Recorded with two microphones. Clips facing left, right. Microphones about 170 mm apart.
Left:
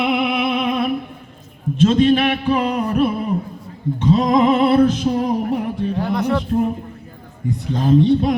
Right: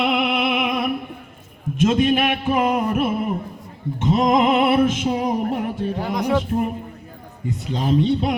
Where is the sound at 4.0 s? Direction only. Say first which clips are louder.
Left 2 dB; 20° right (ahead or behind).